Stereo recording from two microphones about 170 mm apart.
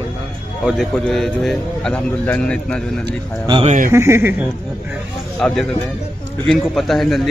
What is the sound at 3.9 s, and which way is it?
Speech, 15° right (ahead or behind).